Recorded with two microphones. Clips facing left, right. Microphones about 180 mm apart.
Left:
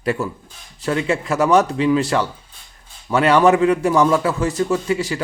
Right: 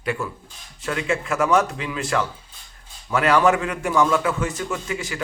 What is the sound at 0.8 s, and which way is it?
A man's voice, 35° left (ahead or behind).